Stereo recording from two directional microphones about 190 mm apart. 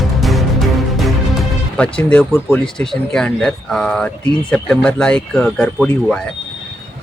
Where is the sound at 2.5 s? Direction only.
5° left (ahead or behind).